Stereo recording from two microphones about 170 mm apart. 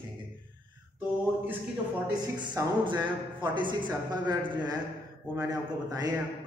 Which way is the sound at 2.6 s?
25° right (ahead or behind).